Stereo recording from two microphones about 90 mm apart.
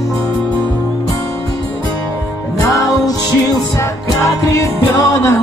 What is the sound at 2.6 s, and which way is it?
Music, 40° left (ahead or behind).